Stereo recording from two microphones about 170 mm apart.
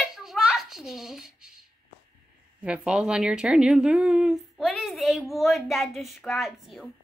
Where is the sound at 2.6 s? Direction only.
5° right (ahead or behind).